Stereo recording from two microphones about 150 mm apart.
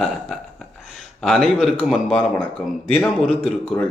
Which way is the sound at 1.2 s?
Centre (ahead or behind).